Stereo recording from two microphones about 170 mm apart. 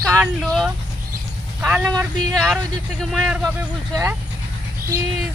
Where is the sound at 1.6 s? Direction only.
10° right (ahead or behind).